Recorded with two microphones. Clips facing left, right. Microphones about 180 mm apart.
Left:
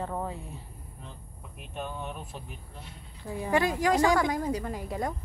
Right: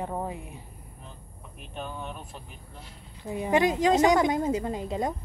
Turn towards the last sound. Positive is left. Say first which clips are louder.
# right 3 dB
turn(degrees=-20)  # may be behind; listen again after turning